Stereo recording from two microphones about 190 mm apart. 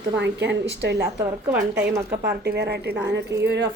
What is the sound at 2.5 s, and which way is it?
Speech, 60° right (ahead or behind).